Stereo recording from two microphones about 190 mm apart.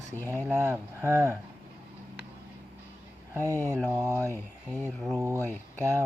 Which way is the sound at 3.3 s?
15° right (ahead or behind).